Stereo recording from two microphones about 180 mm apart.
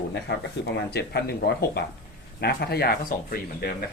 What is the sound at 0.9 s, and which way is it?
Speech, 65° left (ahead or behind).